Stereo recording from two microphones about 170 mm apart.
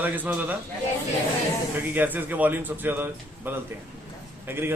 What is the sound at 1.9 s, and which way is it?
Speech, 10° right (ahead or behind).